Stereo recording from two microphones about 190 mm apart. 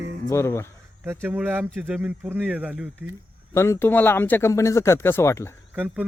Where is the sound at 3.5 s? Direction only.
15° left (ahead or behind).